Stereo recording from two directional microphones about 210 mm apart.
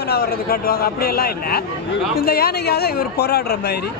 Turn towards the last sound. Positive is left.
turn(degrees=50)  # may be behind; listen again after turning